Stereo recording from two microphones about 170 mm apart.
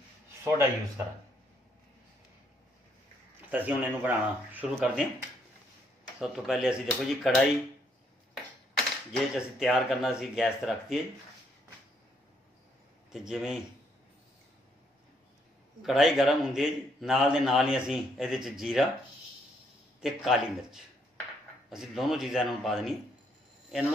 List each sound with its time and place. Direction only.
0.4 s speech: 15° right (ahead or behind)
3.4 s speech: 10° right (ahead or behind)
6.1 s a man's voice: centre (ahead or behind)
9.1 s a man's voice: centre (ahead or behind)
13.1 s a man's voice: 5° right (ahead or behind)
15.8 s a man's voice: centre (ahead or behind)
20.0 s a man's voice: centre (ahead or behind)